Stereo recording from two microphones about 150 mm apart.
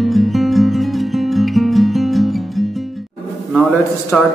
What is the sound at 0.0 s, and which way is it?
Music, centre (ahead or behind).